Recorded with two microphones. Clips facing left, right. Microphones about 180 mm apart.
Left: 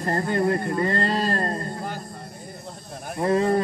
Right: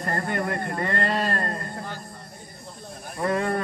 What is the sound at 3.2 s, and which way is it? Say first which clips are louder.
Speech: left 4 dB; 30° left (ahead or behind).